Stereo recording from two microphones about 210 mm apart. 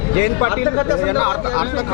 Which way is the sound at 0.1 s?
15° left (ahead or behind).